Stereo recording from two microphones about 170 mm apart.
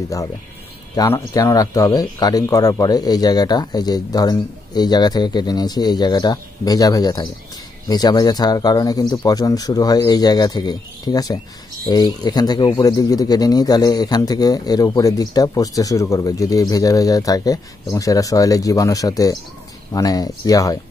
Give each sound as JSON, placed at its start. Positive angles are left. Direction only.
{"t": 0.9, "sound": "speech", "side_deg": 20}